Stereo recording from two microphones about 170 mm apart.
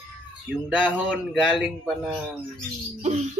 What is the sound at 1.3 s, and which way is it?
Speech, centre (ahead or behind).